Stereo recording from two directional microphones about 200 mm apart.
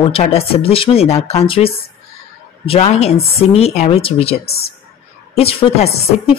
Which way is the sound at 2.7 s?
35° left (ahead or behind).